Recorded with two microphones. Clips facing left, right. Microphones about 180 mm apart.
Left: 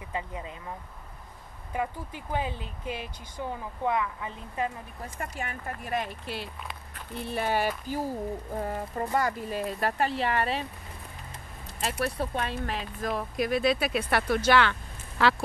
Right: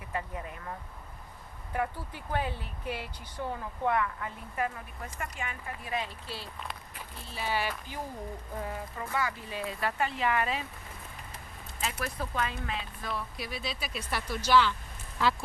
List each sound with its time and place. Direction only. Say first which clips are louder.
0.1 s speech: left 1 dB; 20° left (ahead or behind)
1.7 s speech: left 1 dB; 15° left (ahead or behind)
5.4 s speech: left 3 dB; 50° left (ahead or behind)
6.7 s speech: even; 5° right (ahead or behind)
7.2 s speech: left 6 dB; 60° left (ahead or behind); by 10.7 s 35° left (ahead or behind)
12.0 s speech: left 4 dB; 30° left (ahead or behind)
13.0 s speech: left 8 dB; 45° left (ahead or behind); by 15.3 s 70° left (ahead or behind)